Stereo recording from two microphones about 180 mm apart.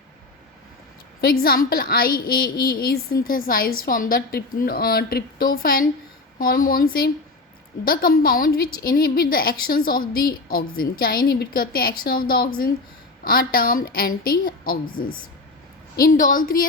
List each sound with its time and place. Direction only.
1.2 s a woman's voice: 55° left (ahead or behind)